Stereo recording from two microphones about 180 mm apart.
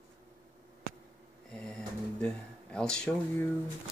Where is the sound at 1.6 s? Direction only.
5° left (ahead or behind).